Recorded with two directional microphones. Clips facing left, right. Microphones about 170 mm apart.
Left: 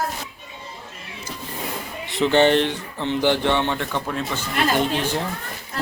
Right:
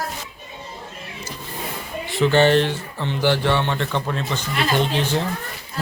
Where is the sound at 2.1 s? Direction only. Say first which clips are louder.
Right 1 dB; 20° left (ahead or behind).